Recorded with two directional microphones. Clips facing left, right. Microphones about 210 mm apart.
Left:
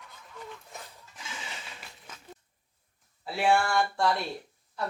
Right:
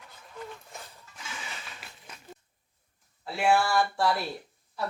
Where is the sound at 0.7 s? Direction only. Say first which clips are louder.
Even; 20° left (ahead or behind).